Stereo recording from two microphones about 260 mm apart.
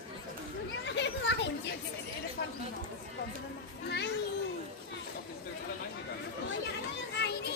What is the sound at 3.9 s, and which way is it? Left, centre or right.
Children playing, left.